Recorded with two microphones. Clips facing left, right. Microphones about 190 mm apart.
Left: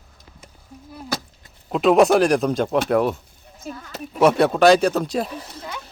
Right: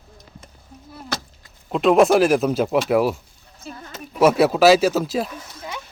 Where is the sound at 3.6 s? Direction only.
40° left (ahead or behind).